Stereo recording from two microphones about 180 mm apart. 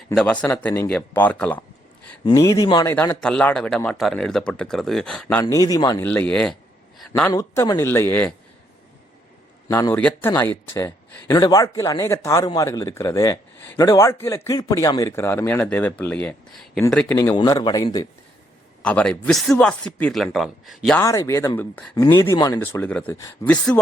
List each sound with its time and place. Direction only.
0.4 s a man's voice: 10° left (ahead or behind)
2.8 s speech: 10° left (ahead or behind)
5.4 s speech: 20° left (ahead or behind)
6.1 s a man's voice: 5° left (ahead or behind)
7.2 s a man's voice: 15° left (ahead or behind)
9.6 s a man's voice: 15° left (ahead or behind)
17.3 s speech: 25° left (ahead or behind)
18.8 s speech: 5° left (ahead or behind)
21.0 s a man's voice: 15° left (ahead or behind)